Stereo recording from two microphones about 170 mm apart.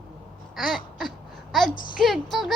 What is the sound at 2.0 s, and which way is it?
Speech, centre (ahead or behind).